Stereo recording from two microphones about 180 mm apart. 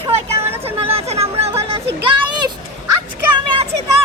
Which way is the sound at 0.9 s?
35° right (ahead or behind).